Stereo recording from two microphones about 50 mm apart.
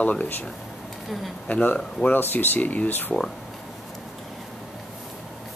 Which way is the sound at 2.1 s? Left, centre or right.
Left.